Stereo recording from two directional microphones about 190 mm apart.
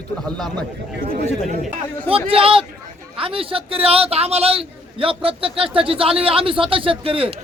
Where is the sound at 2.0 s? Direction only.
30° right (ahead or behind).